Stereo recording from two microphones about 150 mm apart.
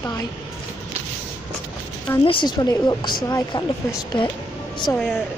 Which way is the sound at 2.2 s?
35° left (ahead or behind).